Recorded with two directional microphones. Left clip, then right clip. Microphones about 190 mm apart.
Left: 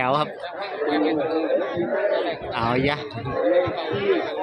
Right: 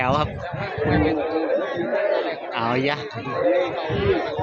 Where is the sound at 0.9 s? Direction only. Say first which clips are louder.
Right 1 dB; 30° left (ahead or behind).